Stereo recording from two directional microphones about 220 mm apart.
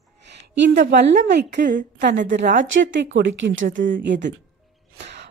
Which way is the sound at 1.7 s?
35° right (ahead or behind).